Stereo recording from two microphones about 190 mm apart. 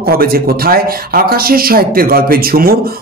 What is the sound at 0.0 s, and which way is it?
Speech, 55° right (ahead or behind).